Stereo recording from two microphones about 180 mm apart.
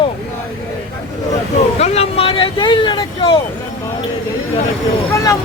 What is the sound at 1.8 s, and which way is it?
Vehicle, 35° left (ahead or behind).